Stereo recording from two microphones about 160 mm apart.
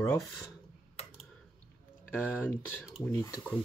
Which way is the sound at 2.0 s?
10° left (ahead or behind).